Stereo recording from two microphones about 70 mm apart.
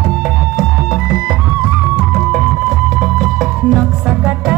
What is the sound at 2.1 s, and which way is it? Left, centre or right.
Music, centre.